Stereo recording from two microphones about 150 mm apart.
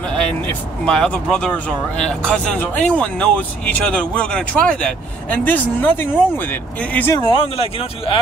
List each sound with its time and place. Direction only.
0.1 s speech: 5° left (ahead or behind)
7.2 s speech: 35° left (ahead or behind)